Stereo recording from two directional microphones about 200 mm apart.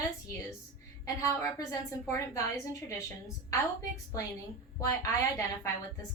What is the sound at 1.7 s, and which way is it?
Speech, 15° left (ahead or behind).